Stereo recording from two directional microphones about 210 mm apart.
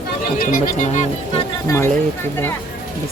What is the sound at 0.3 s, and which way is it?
Speech, 40° left (ahead or behind).